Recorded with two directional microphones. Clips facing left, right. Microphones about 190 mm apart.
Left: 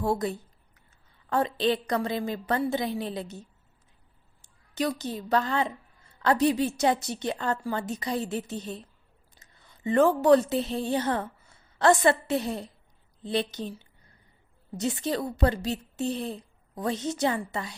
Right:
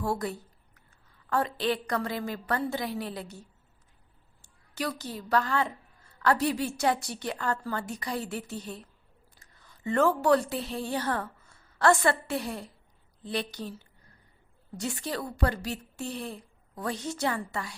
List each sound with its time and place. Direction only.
0.0 s a sound: 20° left (ahead or behind)
1.3 s a woman's voice: 20° left (ahead or behind)
4.4 s a woman's voice: 20° left (ahead or behind)